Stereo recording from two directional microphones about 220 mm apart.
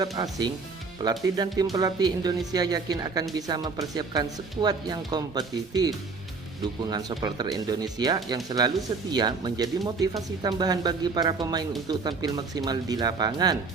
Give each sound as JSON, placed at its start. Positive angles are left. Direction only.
{"t": 0.2, "sound": "speech", "side_deg": -15}